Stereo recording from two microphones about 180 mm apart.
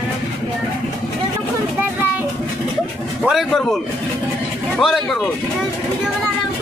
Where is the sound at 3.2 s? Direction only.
Centre (ahead or behind).